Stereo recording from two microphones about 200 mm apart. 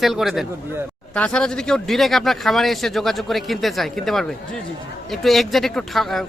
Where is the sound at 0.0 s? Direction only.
Centre (ahead or behind).